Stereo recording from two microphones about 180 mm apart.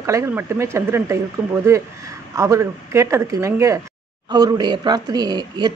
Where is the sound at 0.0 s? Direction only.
15° right (ahead or behind).